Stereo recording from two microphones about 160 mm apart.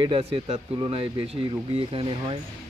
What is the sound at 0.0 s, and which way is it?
Speech, 35° right (ahead or behind).